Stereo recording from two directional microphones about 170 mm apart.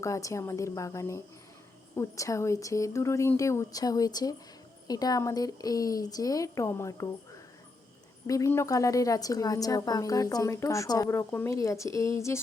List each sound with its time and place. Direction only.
0.0 s a woman's voice: 20° left (ahead or behind)
8.3 s a woman's voice: 15° left (ahead or behind)